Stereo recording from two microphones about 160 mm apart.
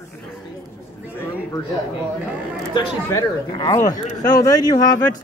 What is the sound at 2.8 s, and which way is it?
Speech, 25° left (ahead or behind).